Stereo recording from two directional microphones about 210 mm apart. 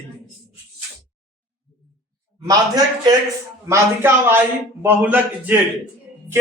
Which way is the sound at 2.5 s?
20° right (ahead or behind).